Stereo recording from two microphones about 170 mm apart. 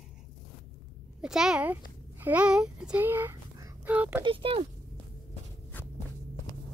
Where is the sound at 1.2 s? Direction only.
5° right (ahead or behind).